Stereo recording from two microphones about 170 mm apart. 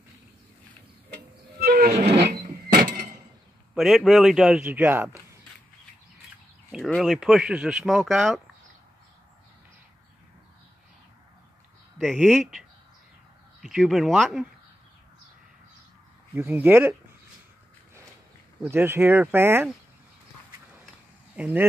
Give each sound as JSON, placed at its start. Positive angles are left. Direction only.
{"t": 1.1, "sound": "music", "side_deg": -65}
{"t": 2.2, "sound": "printer", "side_deg": -55}
{"t": 3.7, "sound": "speech", "side_deg": 0}
{"t": 6.7, "sound": "speech", "side_deg": 0}
{"t": 12.0, "sound": "speech", "side_deg": 0}
{"t": 16.3, "sound": "speech", "side_deg": -10}
{"t": 18.6, "sound": "speech", "side_deg": -15}
{"t": 21.4, "sound": "speech", "side_deg": -10}